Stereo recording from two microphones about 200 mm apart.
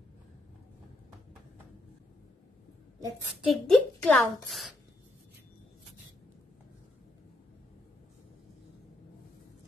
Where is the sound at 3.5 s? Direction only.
5° left (ahead or behind).